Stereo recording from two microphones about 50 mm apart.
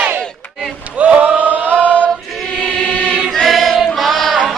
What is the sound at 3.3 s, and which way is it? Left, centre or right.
Choir, centre.